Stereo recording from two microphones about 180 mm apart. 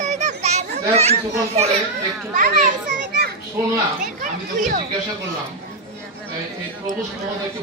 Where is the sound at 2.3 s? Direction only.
45° right (ahead or behind).